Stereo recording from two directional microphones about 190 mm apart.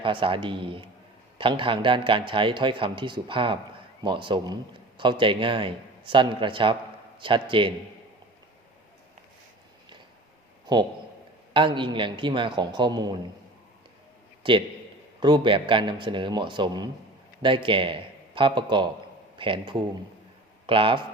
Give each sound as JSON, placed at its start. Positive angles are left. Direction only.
{"t": 0.0, "sound": "a man's voice", "side_deg": -25}
{"t": 11.5, "sound": "a man's voice", "side_deg": -25}
{"t": 14.4, "sound": "a man's voice", "side_deg": -25}